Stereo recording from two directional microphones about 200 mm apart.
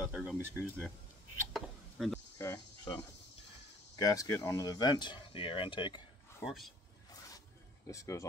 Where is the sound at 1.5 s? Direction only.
Centre (ahead or behind).